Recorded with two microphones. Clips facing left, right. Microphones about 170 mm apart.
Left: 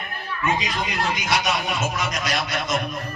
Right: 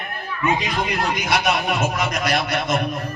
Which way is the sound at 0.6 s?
60° right (ahead or behind).